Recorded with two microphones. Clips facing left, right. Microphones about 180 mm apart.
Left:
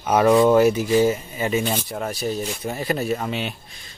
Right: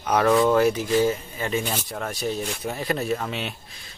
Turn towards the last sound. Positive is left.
turn(degrees=0)  # may be behind; listen again after turning